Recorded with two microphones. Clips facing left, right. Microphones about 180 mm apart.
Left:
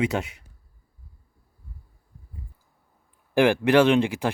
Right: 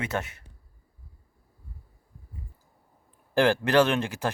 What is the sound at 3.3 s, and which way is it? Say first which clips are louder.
Speech: left 3 dB; 15° left (ahead or behind).